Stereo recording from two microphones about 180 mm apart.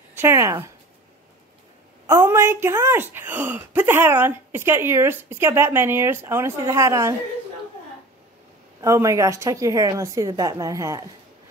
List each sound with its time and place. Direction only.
0.1 s speech: 15° right (ahead or behind)
2.0 s speech: 15° right (ahead or behind)
8.8 s speech: 15° right (ahead or behind)